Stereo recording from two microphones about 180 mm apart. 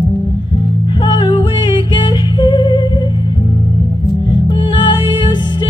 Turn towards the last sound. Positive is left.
turn(degrees=25)  # may be behind; listen again after turning